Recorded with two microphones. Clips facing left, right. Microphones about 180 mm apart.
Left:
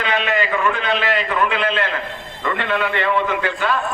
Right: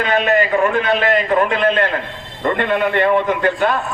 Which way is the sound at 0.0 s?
45° right (ahead or behind).